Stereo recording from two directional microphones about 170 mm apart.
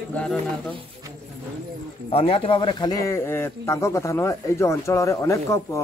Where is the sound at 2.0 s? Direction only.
35° left (ahead or behind).